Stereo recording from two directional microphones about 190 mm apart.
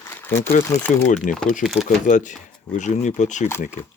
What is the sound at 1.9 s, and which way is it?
Speech, 40° left (ahead or behind).